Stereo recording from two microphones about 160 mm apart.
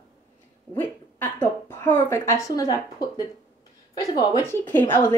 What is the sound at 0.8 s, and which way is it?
A woman's voice, 15° left (ahead or behind).